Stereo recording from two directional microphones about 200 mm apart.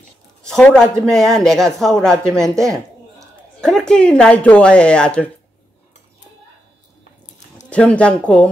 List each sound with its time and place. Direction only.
0.4 s speech: 5° left (ahead or behind)
2.5 s a woman's voice: 15° right (ahead or behind)
3.2 s a woman's voice: centre (ahead or behind)
7.7 s speech: 5° left (ahead or behind)